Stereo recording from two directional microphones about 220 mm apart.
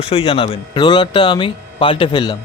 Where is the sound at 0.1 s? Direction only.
25° left (ahead or behind).